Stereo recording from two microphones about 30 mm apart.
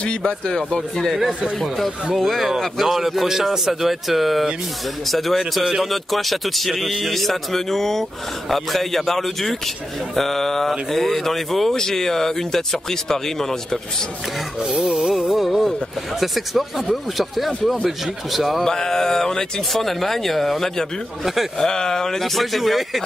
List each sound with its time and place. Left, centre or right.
0.2 s speech: left
2.1 s a man's voice: centre
11.7 s speech: centre
14.6 s a sound: right
15.0 s music: centre
16.2 s speech: centre
18.6 s speech: centre
19.7 s speech: centre
21.5 s speech: centre
22.2 s speech: centre